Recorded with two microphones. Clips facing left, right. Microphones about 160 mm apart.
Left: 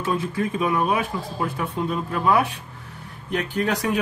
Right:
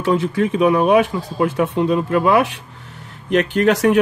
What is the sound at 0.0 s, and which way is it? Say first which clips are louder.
Speech: right 7 dB; 85° right.